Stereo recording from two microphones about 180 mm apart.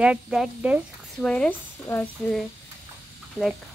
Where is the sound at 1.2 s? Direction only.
5° left (ahead or behind).